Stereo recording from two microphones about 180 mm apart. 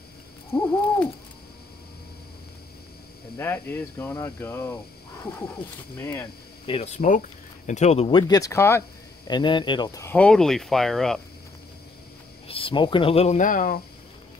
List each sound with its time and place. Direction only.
0.5 s owl: 10° left (ahead or behind)
3.3 s speech: 10° left (ahead or behind)
6.6 s speech: 35° left (ahead or behind)
8.2 s speech: 20° left (ahead or behind)
9.3 s speech: 25° left (ahead or behind)
10.1 s speech: 5° left (ahead or behind)
12.4 s speech: 30° left (ahead or behind); by 13.7 s 50° left (ahead or behind)